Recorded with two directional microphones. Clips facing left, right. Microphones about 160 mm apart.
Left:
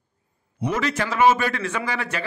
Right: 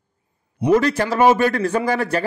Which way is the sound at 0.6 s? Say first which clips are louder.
Right 8 dB; 35° right (ahead or behind).